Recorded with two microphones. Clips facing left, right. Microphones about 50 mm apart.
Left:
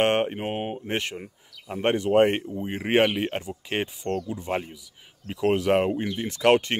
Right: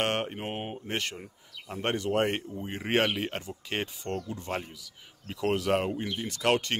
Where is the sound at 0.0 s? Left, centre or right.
Left.